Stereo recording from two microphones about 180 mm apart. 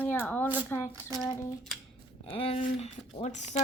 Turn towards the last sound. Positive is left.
turn(degrees=40)  # may be behind; listen again after turning